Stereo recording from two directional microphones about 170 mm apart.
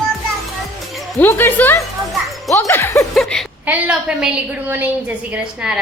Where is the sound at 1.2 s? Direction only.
10° left (ahead or behind).